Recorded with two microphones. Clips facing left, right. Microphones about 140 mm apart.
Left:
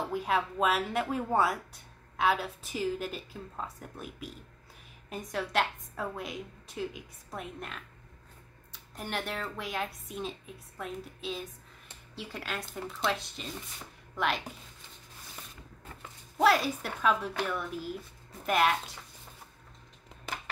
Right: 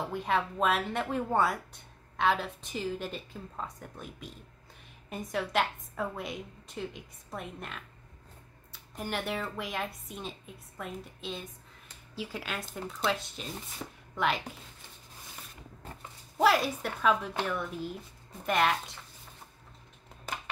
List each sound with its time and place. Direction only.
0.1 s speech: 5° left (ahead or behind)
13.8 s speech: 75° right (ahead or behind)
14.1 s speech: centre (ahead or behind)
16.3 s speech: centre (ahead or behind)